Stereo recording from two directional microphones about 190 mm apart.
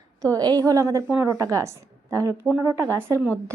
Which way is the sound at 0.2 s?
20° right (ahead or behind).